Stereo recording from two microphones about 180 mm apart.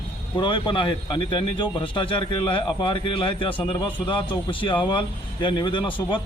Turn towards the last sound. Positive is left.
turn(degrees=25)  # may be behind; listen again after turning